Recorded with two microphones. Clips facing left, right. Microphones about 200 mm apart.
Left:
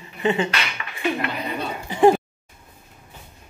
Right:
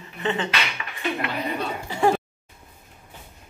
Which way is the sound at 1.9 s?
20° left (ahead or behind).